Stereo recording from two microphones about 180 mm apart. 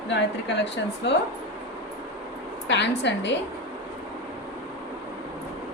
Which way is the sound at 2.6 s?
75° left (ahead or behind).